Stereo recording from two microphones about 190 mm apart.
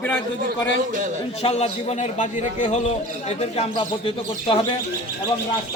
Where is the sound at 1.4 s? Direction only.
35° left (ahead or behind).